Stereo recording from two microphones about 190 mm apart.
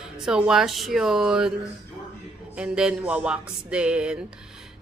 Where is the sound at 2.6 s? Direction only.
5° right (ahead or behind).